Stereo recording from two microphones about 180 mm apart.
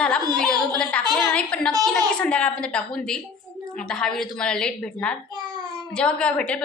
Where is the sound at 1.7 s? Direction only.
20° right (ahead or behind).